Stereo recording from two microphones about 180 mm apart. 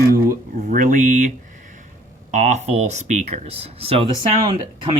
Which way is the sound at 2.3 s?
40° right (ahead or behind).